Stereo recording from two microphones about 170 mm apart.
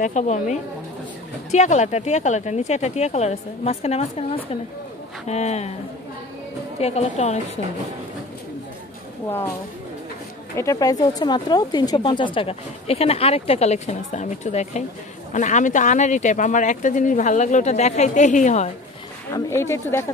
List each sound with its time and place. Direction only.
0.0 s speech: 45° left (ahead or behind)
6.8 s speech: 40° left (ahead or behind)
10.6 s speech: 20° left (ahead or behind); by 18.7 s 45° left (ahead or behind)
19.3 s speech: 15° left (ahead or behind)